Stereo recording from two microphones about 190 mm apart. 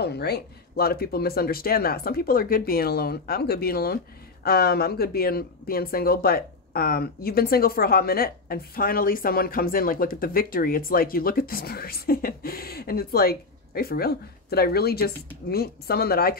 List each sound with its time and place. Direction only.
0.0 s speech: 60° left (ahead or behind)